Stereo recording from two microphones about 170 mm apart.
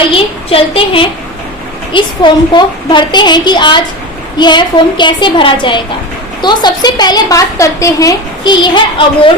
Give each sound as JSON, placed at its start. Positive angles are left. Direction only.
{"t": 0.1, "sound": "a woman's voice", "side_deg": 35}